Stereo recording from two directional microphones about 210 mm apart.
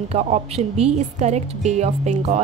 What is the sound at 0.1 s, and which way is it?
Speech, 30° right (ahead or behind).